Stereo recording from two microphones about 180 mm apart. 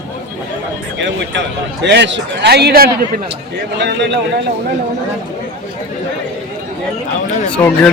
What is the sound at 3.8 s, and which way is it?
Speech, 75° right (ahead or behind).